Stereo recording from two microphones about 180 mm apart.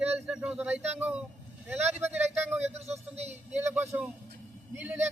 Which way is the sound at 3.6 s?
10° right (ahead or behind).